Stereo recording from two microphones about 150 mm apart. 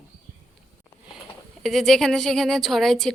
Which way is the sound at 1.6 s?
Centre (ahead or behind).